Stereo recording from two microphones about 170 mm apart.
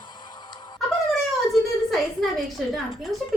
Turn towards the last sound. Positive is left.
turn(degrees=0)  # may be behind; listen again after turning